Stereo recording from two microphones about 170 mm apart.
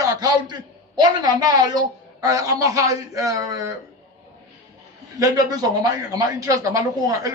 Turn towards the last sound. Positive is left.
turn(degrees=-20)  # may be behind; listen again after turning